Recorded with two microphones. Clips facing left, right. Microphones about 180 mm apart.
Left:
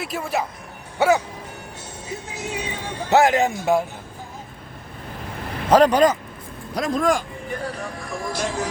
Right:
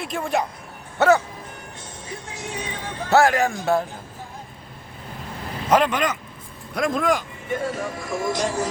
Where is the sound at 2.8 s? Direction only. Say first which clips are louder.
Even; 10° left (ahead or behind).